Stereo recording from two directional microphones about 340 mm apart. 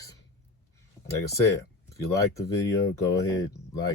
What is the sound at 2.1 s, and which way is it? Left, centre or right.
Speech, centre.